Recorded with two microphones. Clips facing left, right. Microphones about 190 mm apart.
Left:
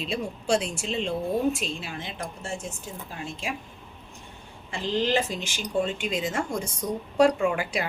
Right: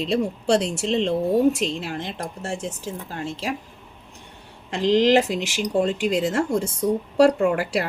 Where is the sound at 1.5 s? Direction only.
70° right (ahead or behind).